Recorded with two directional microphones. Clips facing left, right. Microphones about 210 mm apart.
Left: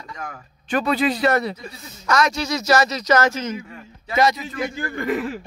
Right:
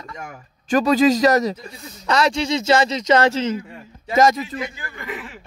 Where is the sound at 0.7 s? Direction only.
40° right (ahead or behind).